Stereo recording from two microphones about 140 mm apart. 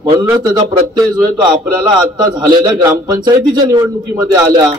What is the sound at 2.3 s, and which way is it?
A man's voice, 30° right (ahead or behind).